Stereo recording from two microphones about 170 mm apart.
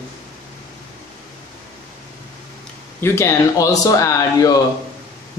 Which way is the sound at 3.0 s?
15° left (ahead or behind).